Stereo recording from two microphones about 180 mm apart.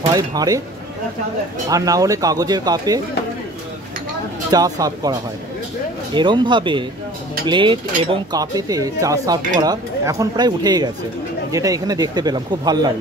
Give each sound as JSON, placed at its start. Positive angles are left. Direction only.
{"t": 0.1, "sound": "speech", "side_deg": -20}
{"t": 1.7, "sound": "speech", "side_deg": -20}
{"t": 4.5, "sound": "speech", "side_deg": -20}
{"t": 6.1, "sound": "speech", "side_deg": -25}